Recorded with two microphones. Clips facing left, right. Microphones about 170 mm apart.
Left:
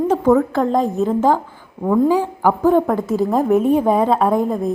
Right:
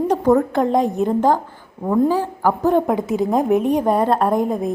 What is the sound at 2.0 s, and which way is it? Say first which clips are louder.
Speech: left 2 dB; 15° left (ahead or behind).